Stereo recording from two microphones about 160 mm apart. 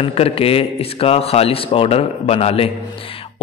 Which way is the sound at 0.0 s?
35° left (ahead or behind).